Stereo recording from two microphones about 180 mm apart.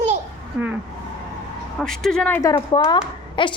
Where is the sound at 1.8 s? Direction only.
5° left (ahead or behind); by 3.5 s 25° left (ahead or behind).